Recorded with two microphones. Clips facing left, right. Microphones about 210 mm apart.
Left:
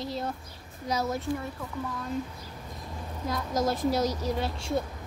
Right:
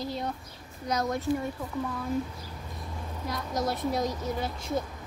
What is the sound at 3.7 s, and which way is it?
Speech, 90° left.